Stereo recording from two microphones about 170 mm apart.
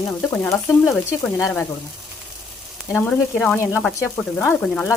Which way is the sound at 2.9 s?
10° left (ahead or behind).